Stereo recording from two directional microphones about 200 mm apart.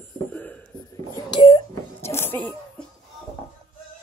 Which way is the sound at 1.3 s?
20° left (ahead or behind).